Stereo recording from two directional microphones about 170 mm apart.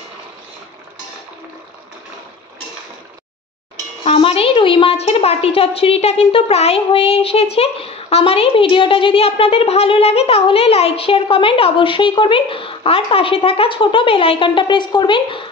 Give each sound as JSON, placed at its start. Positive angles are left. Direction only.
{"t": 4.0, "sound": "a child's voice", "side_deg": 35}